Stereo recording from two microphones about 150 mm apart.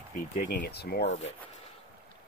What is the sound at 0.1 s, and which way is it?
Speech, 65° left (ahead or behind).